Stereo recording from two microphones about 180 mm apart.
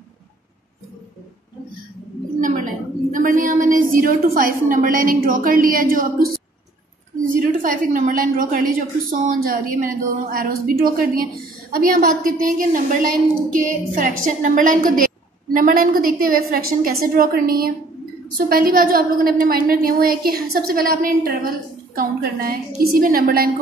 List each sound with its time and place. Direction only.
3.1 s a woman's voice: 50° right (ahead or behind)